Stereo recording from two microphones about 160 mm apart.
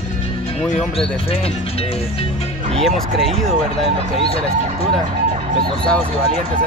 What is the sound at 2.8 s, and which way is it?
Speech, centre (ahead or behind).